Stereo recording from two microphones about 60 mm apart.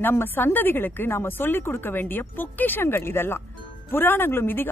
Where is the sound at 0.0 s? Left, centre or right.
Left.